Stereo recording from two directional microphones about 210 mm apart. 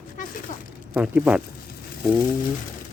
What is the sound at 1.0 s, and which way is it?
Speech, 5° right (ahead or behind).